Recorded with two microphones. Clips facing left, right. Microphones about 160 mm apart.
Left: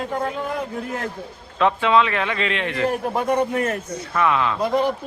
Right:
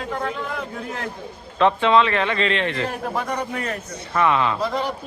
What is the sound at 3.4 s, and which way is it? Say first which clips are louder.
Speech: left 6 dB; 45° left (ahead or behind).